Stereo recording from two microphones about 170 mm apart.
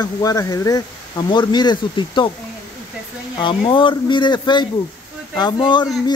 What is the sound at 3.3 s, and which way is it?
Speech, 30° left (ahead or behind).